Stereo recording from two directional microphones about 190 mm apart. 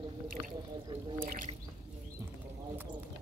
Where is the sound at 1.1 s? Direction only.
50° right (ahead or behind).